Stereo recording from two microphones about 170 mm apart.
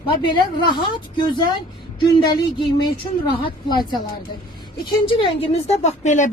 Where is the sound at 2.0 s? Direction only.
25° left (ahead or behind).